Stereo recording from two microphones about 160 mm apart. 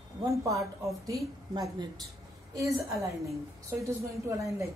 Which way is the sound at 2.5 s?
20° right (ahead or behind).